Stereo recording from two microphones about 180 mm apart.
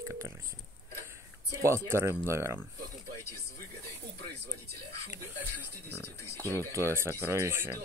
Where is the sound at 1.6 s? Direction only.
15° right (ahead or behind).